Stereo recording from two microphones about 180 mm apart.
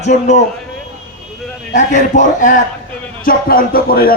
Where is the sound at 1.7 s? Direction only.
40° left (ahead or behind).